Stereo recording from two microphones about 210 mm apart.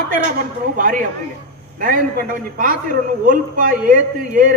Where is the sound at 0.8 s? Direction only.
40° right (ahead or behind).